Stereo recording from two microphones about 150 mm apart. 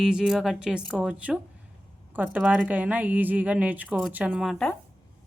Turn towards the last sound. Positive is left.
turn(degrees=5)  # may be behind; listen again after turning